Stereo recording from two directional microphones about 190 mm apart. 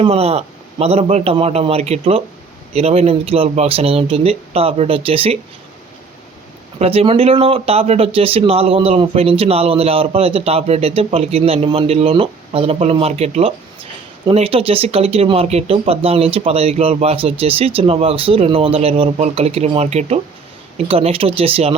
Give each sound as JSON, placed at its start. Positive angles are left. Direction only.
{"t": 0.0, "sound": "speech", "side_deg": -30}
{"t": 6.7, "sound": "speech", "side_deg": -30}